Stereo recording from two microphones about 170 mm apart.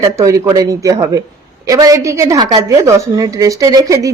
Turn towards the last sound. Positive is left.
turn(degrees=-20)  # may be behind; listen again after turning